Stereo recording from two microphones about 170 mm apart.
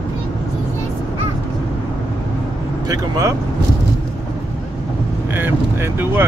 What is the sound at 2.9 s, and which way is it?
Speech, 20° right (ahead or behind).